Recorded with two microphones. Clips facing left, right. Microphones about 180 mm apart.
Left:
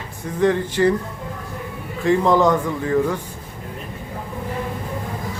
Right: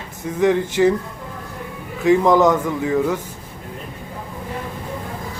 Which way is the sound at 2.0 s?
10° right (ahead or behind).